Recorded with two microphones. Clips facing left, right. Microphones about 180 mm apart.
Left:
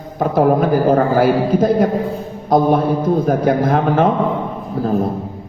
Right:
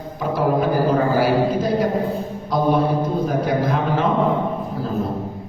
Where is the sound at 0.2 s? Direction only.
50° left (ahead or behind).